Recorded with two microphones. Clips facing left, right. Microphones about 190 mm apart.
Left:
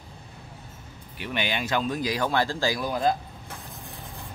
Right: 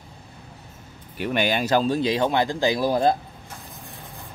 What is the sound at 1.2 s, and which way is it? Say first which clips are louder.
Speech: right 6 dB; 45° right (ahead or behind).